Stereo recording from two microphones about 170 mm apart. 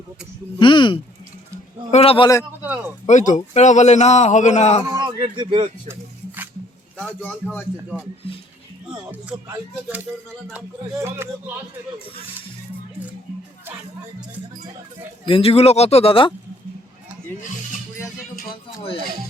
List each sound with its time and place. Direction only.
0.6 s speech: 30° left (ahead or behind)
3.1 s a man's voice: 45° left (ahead or behind)
4.9 s speech: 25° right (ahead or behind)
5.9 s a sound: 10° right (ahead or behind)
6.9 s a man's voice: 10° left (ahead or behind)
9.5 s speech: 10° right (ahead or behind)
15.3 s speech: 35° left (ahead or behind)
18.8 s speech: 30° left (ahead or behind)